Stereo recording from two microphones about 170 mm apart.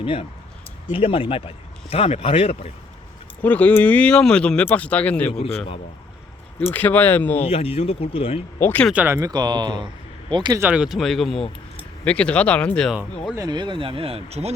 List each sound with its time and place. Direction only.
0.0 s speech: 30° left (ahead or behind)
3.4 s speech: 10° left (ahead or behind)
5.4 s speech: 35° left (ahead or behind)
6.7 s speech: 10° left (ahead or behind)
7.3 s speech: 35° left (ahead or behind)
8.5 s speech: 10° left (ahead or behind)
8.9 s speech: 10° right (ahead or behind); by 10.6 s 25° right (ahead or behind)
10.6 s speech: 5° right (ahead or behind)
13.3 s speech: 25° right (ahead or behind); by 14.5 s 40° right (ahead or behind)